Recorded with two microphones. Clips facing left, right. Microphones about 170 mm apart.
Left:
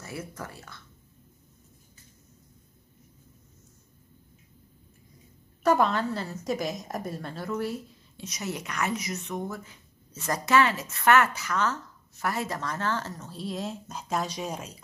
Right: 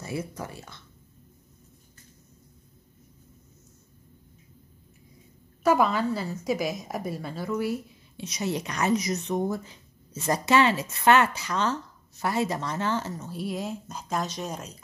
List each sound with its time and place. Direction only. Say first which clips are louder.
0.0 s speech: right 5 dB; 15° right (ahead or behind)
5.6 s a woman's voice: right 1 dB; 5° right (ahead or behind)
8.3 s a woman's voice: right 5 dB; 30° right (ahead or behind)
13.1 s a woman's voice: right 3 dB; 5° right (ahead or behind)